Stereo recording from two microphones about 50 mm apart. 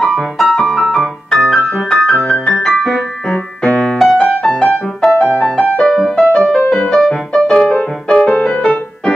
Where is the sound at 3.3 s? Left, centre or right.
Left.